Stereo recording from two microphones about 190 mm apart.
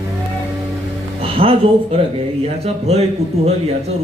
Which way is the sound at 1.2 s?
30° right (ahead or behind).